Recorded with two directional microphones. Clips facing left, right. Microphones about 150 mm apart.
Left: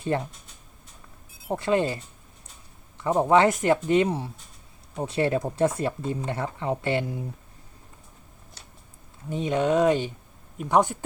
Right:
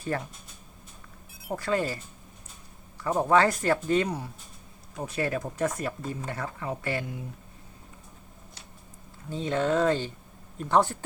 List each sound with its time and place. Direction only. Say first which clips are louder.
0.1 s speech: left 5 dB; 20° left (ahead or behind)
1.4 s speech: left 4 dB; 25° left (ahead or behind)
3.0 s speech: left 3 dB; 20° left (ahead or behind)
9.3 s speech: left 3 dB; 15° left (ahead or behind)